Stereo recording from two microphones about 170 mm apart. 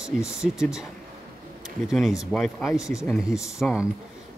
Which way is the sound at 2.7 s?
20° left (ahead or behind).